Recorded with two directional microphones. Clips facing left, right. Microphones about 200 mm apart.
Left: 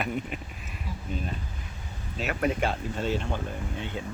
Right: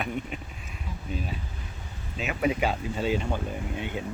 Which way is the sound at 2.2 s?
5° right (ahead or behind).